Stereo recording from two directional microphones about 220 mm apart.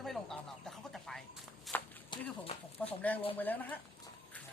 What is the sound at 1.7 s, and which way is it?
Walk, centre (ahead or behind).